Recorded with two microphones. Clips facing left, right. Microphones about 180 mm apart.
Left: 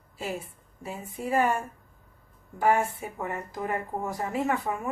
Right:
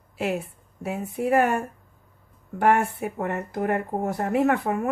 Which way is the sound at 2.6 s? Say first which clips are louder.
Right 3 dB; 65° right (ahead or behind).